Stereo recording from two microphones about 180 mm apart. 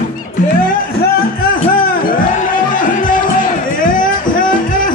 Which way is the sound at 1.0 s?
55° left (ahead or behind).